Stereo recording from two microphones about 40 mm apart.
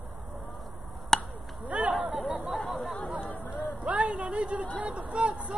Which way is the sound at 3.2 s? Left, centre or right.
Left.